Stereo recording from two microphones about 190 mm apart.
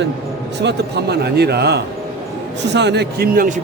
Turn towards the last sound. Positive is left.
turn(degrees=-45)  # may be behind; listen again after turning